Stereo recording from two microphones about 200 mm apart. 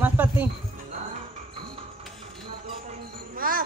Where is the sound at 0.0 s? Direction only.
10° right (ahead or behind).